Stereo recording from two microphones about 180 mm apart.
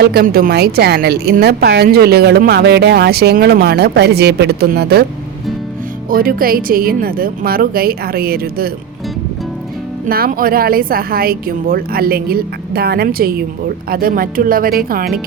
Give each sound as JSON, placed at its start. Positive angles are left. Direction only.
{"t": 0.0, "sound": "a woman's voice", "side_deg": -60}
{"t": 6.1, "sound": "a woman's voice", "side_deg": -50}
{"t": 10.1, "sound": "a woman's voice", "side_deg": -55}